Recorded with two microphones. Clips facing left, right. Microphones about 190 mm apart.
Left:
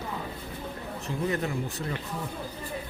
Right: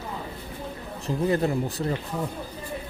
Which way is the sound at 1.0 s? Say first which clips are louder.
Right 6 dB; 35° right (ahead or behind).